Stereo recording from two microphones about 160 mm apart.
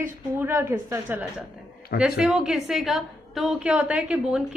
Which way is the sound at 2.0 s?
5° right (ahead or behind).